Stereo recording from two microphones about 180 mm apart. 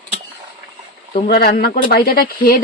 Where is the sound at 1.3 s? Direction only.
55° left (ahead or behind).